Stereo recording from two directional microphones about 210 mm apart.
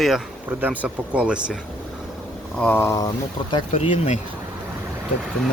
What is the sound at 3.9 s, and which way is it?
Speech, 30° left (ahead or behind).